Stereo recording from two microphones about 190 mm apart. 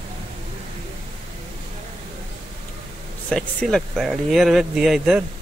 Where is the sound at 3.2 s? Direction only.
5° left (ahead or behind).